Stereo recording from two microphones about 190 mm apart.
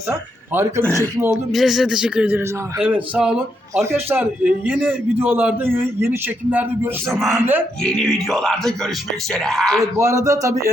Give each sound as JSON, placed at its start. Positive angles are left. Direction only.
{"t": 0.1, "sound": "a man's voice", "side_deg": -10}
{"t": 1.5, "sound": "a man's voice", "side_deg": 0}
{"t": 9.8, "sound": "a man's voice", "side_deg": -15}